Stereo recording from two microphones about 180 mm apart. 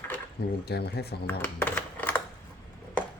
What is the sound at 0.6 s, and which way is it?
Speech, 65° left (ahead or behind).